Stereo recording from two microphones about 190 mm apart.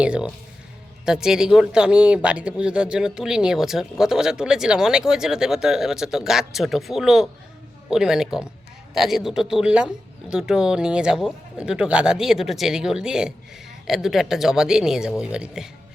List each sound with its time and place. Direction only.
0.0 s speech: 5° right (ahead or behind)